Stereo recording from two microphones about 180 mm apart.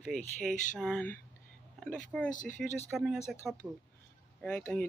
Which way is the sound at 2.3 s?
45° left (ahead or behind).